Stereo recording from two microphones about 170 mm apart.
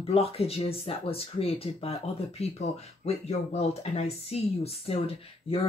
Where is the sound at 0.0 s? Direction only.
35° left (ahead or behind).